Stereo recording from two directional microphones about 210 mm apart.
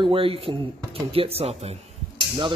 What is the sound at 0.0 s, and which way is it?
A man's voice, 25° right (ahead or behind).